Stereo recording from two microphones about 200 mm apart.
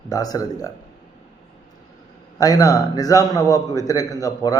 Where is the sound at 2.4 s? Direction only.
15° left (ahead or behind).